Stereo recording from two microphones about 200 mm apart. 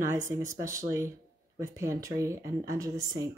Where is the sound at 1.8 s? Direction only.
15° right (ahead or behind).